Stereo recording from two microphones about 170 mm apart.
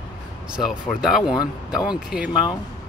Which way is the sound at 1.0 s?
Centre (ahead or behind).